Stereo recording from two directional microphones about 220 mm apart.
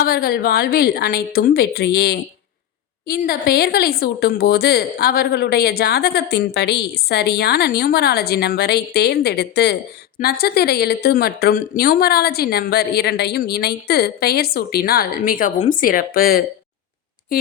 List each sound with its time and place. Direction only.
0.0 s speech: 40° left (ahead or behind)